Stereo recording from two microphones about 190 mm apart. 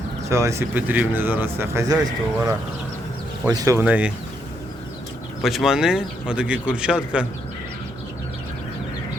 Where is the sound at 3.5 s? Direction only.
15° right (ahead or behind).